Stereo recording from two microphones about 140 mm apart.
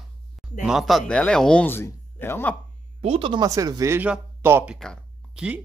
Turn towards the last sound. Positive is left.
turn(degrees=0)  # may be behind; listen again after turning